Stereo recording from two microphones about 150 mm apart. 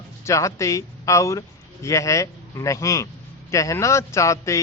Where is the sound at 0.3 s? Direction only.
20° left (ahead or behind).